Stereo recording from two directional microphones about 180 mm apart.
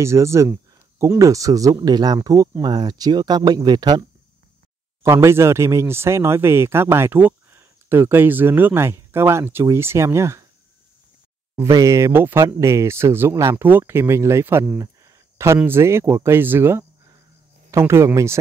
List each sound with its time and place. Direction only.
0.0 s speech: 15° right (ahead or behind)
5.0 s speech: 15° right (ahead or behind)
11.5 s speech: 20° right (ahead or behind)